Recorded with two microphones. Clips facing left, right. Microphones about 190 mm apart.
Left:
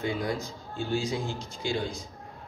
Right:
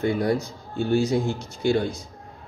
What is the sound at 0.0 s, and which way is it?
Speech, 60° right (ahead or behind).